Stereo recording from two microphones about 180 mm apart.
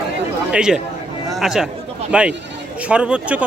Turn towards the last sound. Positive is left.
turn(degrees=-5)  # may be behind; listen again after turning